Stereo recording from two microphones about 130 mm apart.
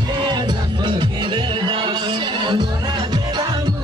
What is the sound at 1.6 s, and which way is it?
Music, 40° right (ahead or behind).